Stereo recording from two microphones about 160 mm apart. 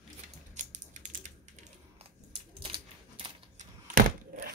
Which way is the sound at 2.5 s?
30° right (ahead or behind).